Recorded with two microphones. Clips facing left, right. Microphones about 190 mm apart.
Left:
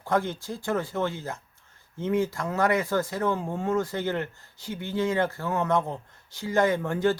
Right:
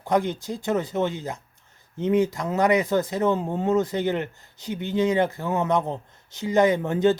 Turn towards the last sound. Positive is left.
turn(degrees=-20)  # may be behind; listen again after turning